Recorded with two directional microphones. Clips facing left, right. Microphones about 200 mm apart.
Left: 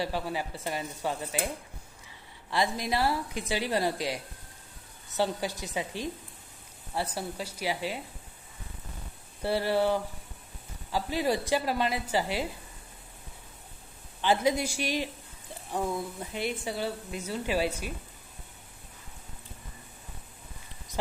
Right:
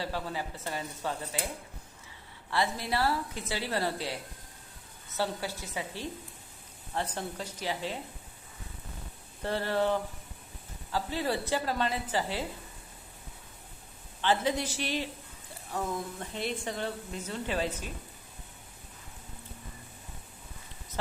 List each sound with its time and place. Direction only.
0.0 s a woman's voice: 15° left (ahead or behind)
2.5 s a woman's voice: 15° left (ahead or behind)
9.4 s a woman's voice: 10° left (ahead or behind)
14.2 s a woman's voice: 10° left (ahead or behind)
16.2 s a woman's voice: 10° left (ahead or behind)